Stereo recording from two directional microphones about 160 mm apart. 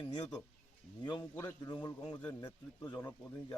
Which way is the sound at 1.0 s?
25° left (ahead or behind).